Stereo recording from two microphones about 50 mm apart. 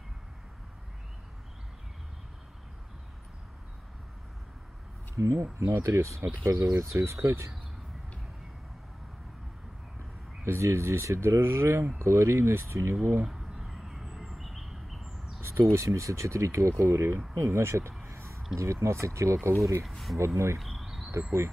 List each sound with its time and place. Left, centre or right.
5.1 s speech: right
10.4 s speech: right
11.1 s speech: right
13.3 s a sound: centre
15.4 s speech: right
18.0 s a sound: right
18.6 s speech: right
19.9 s speech: centre
20.2 s speech: right
20.5 s cricket: centre